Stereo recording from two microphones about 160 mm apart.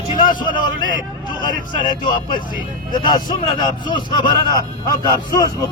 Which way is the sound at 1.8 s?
30° left (ahead or behind).